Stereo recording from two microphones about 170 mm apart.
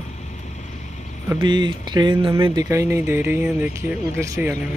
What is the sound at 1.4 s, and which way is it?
Speech, 25° right (ahead or behind).